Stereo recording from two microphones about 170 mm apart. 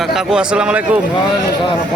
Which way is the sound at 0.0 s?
Centre (ahead or behind).